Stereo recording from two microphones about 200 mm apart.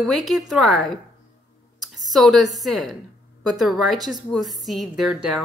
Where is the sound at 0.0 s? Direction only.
Centre (ahead or behind).